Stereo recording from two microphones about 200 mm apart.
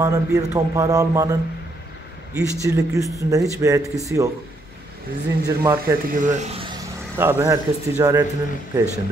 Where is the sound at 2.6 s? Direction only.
15° right (ahead or behind).